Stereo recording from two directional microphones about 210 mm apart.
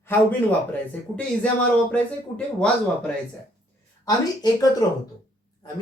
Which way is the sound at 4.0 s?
15° left (ahead or behind).